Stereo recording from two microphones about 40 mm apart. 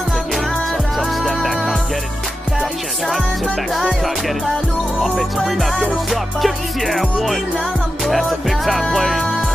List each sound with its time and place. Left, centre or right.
0.9 s music: centre
5.0 s music: centre